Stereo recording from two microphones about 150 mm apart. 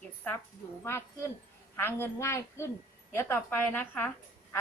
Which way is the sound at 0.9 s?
15° left (ahead or behind).